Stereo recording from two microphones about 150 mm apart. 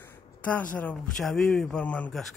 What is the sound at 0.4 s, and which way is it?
A woman's voice, 10° left (ahead or behind).